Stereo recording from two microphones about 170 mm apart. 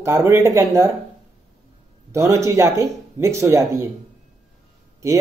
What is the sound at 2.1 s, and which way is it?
Speech, 15° right (ahead or behind).